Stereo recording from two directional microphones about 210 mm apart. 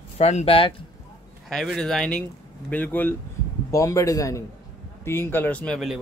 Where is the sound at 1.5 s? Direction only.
Centre (ahead or behind).